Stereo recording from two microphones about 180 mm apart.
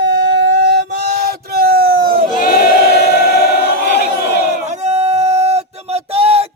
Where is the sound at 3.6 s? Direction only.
65° left (ahead or behind).